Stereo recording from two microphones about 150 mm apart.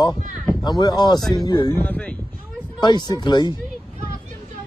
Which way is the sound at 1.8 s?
10° left (ahead or behind).